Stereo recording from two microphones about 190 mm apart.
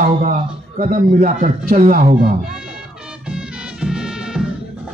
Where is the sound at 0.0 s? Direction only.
40° right (ahead or behind).